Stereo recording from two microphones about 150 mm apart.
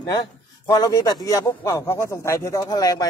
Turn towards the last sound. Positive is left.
turn(degrees=25)  # may be behind; listen again after turning